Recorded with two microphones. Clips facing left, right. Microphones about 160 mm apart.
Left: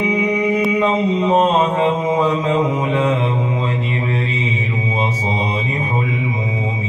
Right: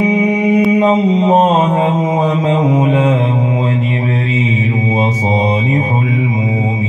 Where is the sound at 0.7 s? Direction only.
35° right (ahead or behind).